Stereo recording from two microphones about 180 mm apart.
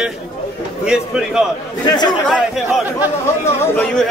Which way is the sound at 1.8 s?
25° left (ahead or behind).